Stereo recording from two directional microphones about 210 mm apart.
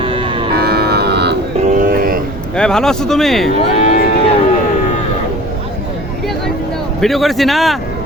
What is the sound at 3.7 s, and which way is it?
Speech, 30° left (ahead or behind).